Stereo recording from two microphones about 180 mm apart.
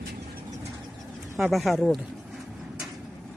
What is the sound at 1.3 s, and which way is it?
Speech, centre (ahead or behind).